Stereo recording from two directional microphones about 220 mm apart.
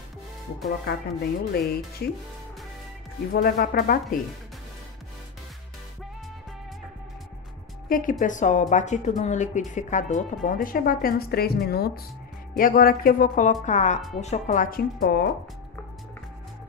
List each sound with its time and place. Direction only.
0.8 s speech: 45° left (ahead or behind)
3.3 s speech: 45° left (ahead or behind)
7.9 s speech: 40° left (ahead or behind)